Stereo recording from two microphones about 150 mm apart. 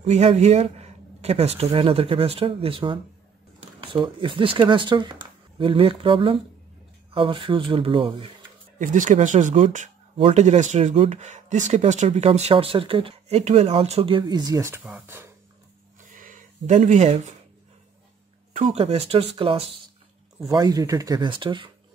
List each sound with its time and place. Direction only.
0.0 s speech: 45° right (ahead or behind)
8.7 s speech: 60° right (ahead or behind)
10.1 s speech: 45° right (ahead or behind); by 14.8 s 20° right (ahead or behind)
14.8 s speech: 10° right (ahead or behind)
16.0 s a sound: 60° right (ahead or behind)
18.6 s speech: 40° right (ahead or behind)
20.3 s speech: 25° right (ahead or behind)